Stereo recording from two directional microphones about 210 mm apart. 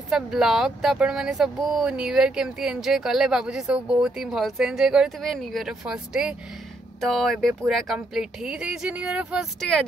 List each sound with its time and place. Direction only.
0.1 s speech: centre (ahead or behind)